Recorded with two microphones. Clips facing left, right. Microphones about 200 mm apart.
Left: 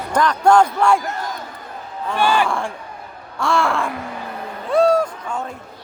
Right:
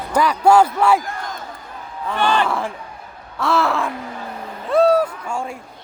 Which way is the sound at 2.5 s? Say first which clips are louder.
Even; 5° right (ahead or behind).